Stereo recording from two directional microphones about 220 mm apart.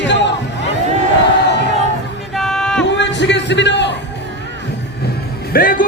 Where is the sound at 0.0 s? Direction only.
55° left (ahead or behind).